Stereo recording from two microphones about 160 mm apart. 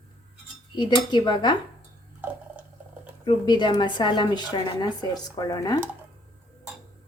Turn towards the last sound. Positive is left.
turn(degrees=25)  # may be behind; listen again after turning